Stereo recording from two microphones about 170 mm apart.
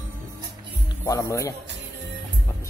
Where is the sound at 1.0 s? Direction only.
20° left (ahead or behind).